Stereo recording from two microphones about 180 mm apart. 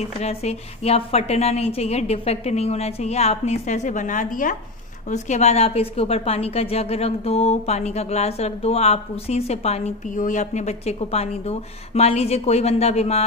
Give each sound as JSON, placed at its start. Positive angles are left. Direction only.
{"t": 0.2, "sound": "a woman's voice", "side_deg": 35}